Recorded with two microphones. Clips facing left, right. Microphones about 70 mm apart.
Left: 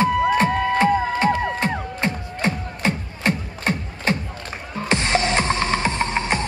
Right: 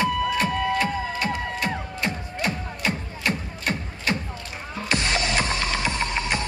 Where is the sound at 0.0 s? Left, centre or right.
Left.